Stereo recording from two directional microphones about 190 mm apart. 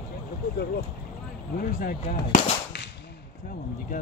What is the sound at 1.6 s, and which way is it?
Whip, 45° left (ahead or behind).